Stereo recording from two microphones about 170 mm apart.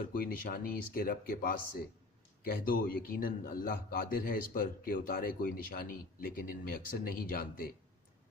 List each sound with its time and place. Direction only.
0.1 s a man's voice: 60° left (ahead or behind)
2.6 s a man's voice: 55° left (ahead or behind)